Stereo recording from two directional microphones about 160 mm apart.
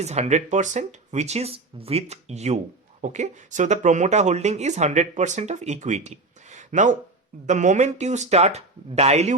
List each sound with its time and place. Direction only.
0.0 s speech: 45° right (ahead or behind)